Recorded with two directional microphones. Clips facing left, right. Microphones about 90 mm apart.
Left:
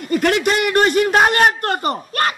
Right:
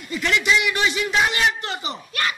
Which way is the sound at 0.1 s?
50° left (ahead or behind).